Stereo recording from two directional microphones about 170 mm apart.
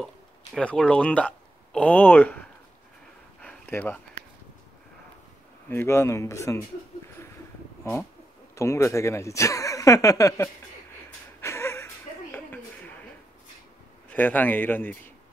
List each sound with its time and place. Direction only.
0.6 s speech: 5° left (ahead or behind)
3.4 s a sound: 10° left (ahead or behind)
5.7 s speech: 15° left (ahead or behind)
8.5 s speech: 15° left (ahead or behind)
11.4 s a sound: 15° left (ahead or behind)
14.1 s speech: 10° left (ahead or behind)